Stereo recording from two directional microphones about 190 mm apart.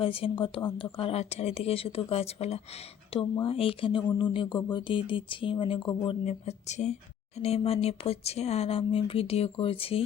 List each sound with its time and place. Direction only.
0.0 s speech: 30° left (ahead or behind)